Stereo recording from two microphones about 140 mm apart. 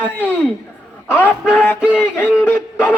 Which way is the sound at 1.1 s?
10° left (ahead or behind).